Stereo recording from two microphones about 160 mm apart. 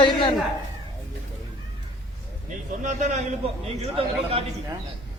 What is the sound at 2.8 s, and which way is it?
Speech, 50° right (ahead or behind).